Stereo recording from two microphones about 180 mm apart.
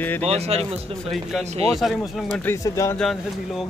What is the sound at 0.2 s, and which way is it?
Speech, 35° right (ahead or behind).